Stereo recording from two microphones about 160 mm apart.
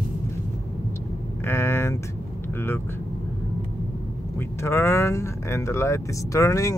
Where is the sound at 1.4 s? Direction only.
15° left (ahead or behind).